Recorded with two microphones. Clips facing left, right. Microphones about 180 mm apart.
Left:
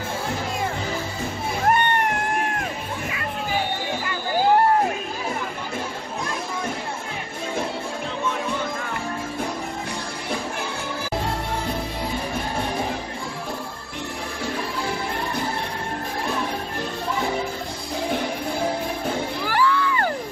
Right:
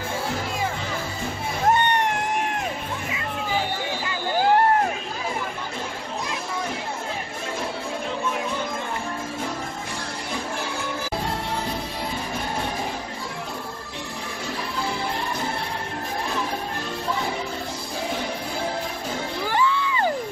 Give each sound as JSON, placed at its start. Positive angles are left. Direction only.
{"t": 19.4, "sound": "music", "side_deg": -20}